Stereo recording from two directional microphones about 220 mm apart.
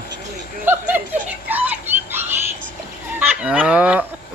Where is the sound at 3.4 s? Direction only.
5° right (ahead or behind).